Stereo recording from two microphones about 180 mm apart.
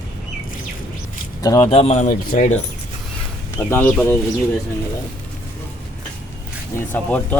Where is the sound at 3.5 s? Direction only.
10° left (ahead or behind).